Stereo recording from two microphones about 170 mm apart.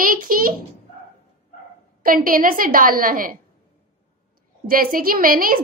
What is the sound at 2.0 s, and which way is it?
A woman's voice, 55° right (ahead or behind).